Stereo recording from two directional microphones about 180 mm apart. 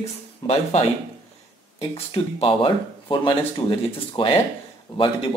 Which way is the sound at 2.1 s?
30° left (ahead or behind).